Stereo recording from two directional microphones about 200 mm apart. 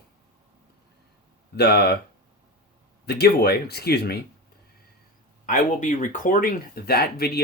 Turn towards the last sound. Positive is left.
turn(degrees=50)  # may be behind; listen again after turning